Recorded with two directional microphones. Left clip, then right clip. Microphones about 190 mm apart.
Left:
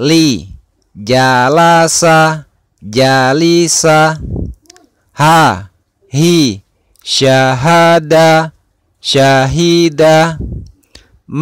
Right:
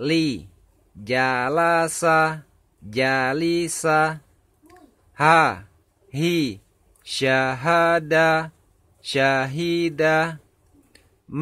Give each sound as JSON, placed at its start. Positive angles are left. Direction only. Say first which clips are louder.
{"t": 0.0, "sound": "speech", "louder": "left 12 dB", "side_deg": 45}